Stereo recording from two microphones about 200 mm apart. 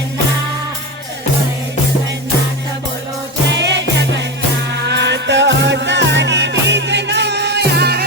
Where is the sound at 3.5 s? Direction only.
60° right (ahead or behind).